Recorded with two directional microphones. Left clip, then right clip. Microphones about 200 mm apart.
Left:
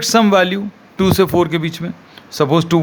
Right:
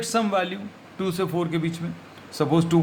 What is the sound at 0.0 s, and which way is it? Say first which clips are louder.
Speech: left 11 dB; 50° left (ahead or behind).